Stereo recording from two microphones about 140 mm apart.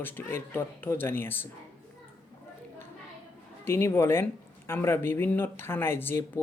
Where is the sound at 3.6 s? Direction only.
20° left (ahead or behind).